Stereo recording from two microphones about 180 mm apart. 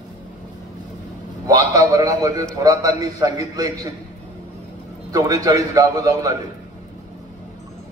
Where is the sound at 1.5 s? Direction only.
20° right (ahead or behind).